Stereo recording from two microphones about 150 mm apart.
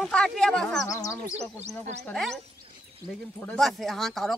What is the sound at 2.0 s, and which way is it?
Speech, centre (ahead or behind).